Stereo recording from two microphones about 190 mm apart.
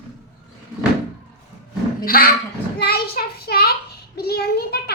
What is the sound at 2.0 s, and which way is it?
Dog, 50° left (ahead or behind).